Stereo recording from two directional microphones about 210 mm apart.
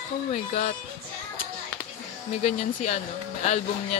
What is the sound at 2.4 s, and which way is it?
Speech, 35° left (ahead or behind).